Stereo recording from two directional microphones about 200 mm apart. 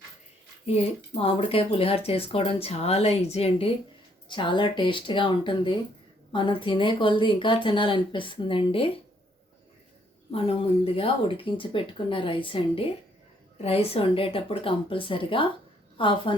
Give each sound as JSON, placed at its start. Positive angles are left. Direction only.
{"t": 0.6, "sound": "speech", "side_deg": 30}
{"t": 10.3, "sound": "speech", "side_deg": 30}